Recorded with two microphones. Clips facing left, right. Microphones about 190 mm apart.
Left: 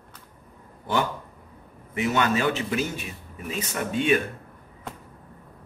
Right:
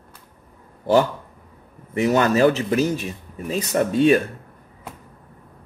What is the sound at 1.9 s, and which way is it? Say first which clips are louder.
Speech: right 6 dB; 40° right (ahead or behind).